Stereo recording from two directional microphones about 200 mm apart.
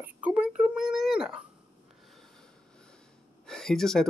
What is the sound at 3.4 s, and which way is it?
Speech, centre (ahead or behind).